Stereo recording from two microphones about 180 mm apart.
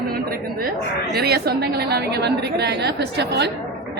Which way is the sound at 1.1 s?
60° right (ahead or behind).